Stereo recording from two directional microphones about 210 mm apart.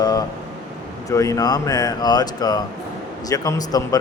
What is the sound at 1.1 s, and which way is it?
A man's voice, 15° left (ahead or behind).